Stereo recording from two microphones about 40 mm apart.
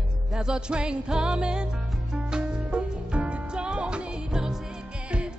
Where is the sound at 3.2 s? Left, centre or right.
Right.